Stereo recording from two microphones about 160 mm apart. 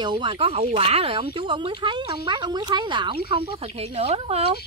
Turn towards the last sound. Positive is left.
turn(degrees=-40)  # may be behind; listen again after turning